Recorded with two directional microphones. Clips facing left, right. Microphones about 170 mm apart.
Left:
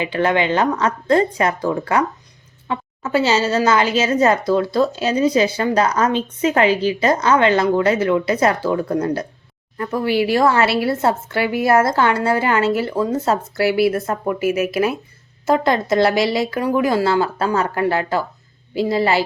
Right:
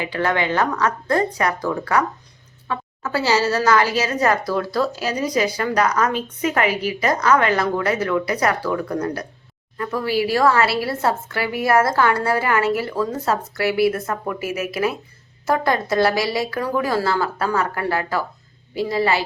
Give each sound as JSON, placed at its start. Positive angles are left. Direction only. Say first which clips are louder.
{"t": 0.0, "sound": "a woman's voice", "louder": "left 4 dB", "side_deg": 20}